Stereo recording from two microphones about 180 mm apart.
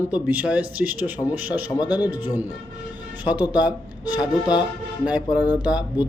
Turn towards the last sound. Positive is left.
turn(degrees=-5)  # may be behind; listen again after turning